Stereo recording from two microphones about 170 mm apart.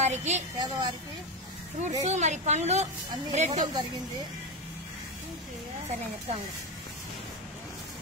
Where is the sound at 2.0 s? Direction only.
40° right (ahead or behind).